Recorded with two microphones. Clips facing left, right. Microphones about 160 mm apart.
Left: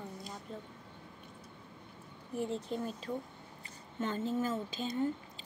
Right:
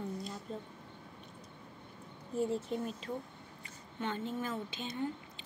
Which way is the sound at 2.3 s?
10° left (ahead or behind).